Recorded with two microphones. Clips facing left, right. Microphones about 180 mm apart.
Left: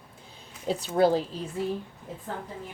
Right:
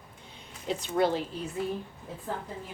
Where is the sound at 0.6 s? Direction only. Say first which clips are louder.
Left 4 dB; 35° left (ahead or behind).